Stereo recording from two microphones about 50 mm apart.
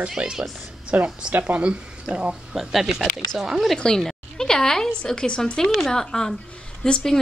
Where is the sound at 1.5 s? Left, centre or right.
Right.